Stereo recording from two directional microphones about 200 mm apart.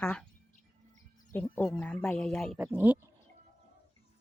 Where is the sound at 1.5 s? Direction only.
10° left (ahead or behind); by 2.9 s 5° right (ahead or behind).